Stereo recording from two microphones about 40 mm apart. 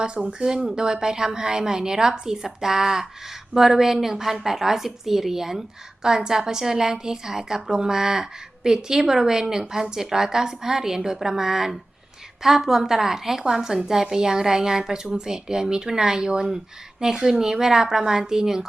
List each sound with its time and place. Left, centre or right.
0.0 s a woman's voice: right